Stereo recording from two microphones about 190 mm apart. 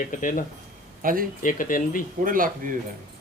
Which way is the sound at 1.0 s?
45° right (ahead or behind).